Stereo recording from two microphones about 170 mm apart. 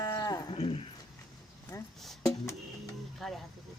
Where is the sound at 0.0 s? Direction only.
20° left (ahead or behind).